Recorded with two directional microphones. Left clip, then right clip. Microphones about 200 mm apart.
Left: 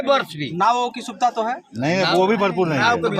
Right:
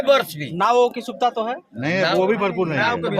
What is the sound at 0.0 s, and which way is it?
Speech, 5° right (ahead or behind).